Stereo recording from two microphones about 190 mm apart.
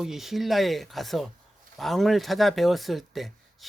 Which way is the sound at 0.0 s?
Centre (ahead or behind).